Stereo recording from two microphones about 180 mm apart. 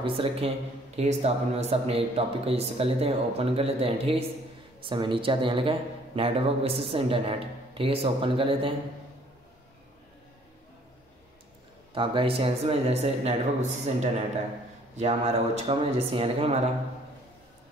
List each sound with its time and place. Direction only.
0.0 s a man's voice: 30° right (ahead or behind)
11.9 s a man's voice: 30° right (ahead or behind)